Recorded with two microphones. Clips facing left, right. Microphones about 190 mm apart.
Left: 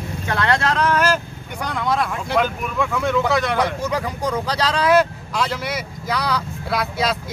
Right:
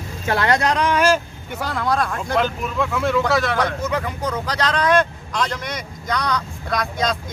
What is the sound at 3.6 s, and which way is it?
Speech, 10° left (ahead or behind).